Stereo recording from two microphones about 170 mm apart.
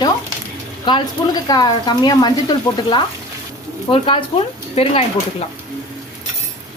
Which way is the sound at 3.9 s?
30° left (ahead or behind).